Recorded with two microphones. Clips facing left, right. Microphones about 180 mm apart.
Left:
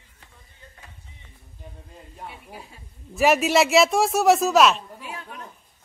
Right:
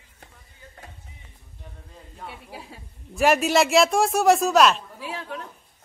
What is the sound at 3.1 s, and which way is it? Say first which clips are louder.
Speech: left 1 dB; centre (ahead or behind).